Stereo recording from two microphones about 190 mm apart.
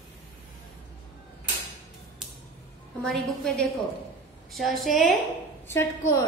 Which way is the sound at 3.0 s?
Centre (ahead or behind).